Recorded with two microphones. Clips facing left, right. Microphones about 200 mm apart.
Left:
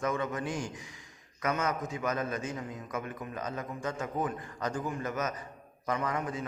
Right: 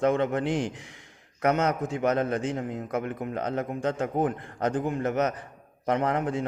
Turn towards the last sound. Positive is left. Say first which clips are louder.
# right 7 dB
turn(degrees=-65)  # may be behind; listen again after turning